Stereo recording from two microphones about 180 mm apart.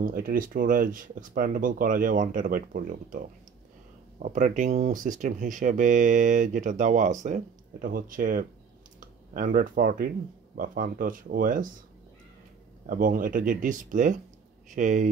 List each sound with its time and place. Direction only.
0.0 s speech: 50° right (ahead or behind)
12.8 s speech: 50° right (ahead or behind)